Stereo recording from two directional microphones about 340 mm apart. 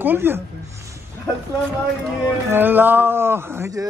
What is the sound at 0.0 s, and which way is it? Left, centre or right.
Speech, centre.